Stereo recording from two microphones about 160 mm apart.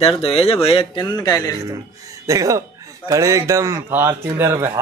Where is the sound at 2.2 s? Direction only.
20° right (ahead or behind).